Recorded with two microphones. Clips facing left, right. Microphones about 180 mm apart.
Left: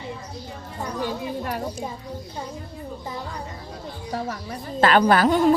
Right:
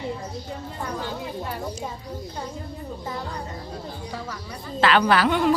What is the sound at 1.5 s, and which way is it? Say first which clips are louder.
Speech: left 3 dB; 70° left (ahead or behind).